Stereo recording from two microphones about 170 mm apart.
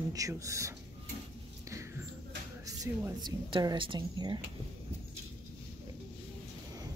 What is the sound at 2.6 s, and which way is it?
A woman's voice, 20° right (ahead or behind).